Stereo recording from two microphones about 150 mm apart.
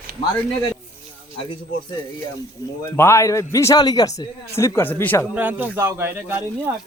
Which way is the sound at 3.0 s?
20° left (ahead or behind).